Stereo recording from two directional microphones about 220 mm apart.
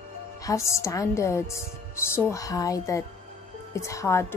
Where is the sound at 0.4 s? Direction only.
15° left (ahead or behind).